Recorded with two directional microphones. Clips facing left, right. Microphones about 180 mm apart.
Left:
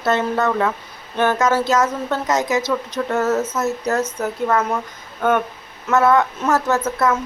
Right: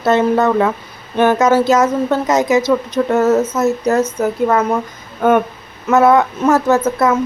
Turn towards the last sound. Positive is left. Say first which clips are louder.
# right 5 dB
turn(degrees=-15)  # may be behind; listen again after turning